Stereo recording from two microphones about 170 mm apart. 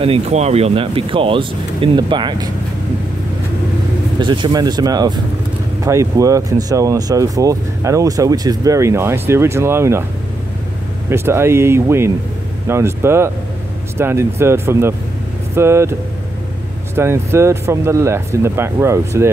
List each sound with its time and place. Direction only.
0.0 s speech: 35° right (ahead or behind)
4.2 s speech: 25° right (ahead or behind)
11.1 s speech: 15° right (ahead or behind)